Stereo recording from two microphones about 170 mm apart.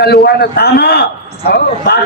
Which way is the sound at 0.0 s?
70° left (ahead or behind).